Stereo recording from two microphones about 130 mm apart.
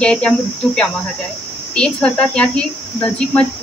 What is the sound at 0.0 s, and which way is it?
Speech, 10° left (ahead or behind).